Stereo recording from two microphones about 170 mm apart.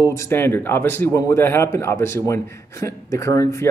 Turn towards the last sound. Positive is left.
turn(degrees=20)  # may be behind; listen again after turning